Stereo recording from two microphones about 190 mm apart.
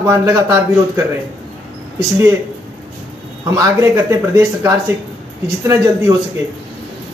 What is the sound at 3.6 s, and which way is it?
Speech, 15° right (ahead or behind).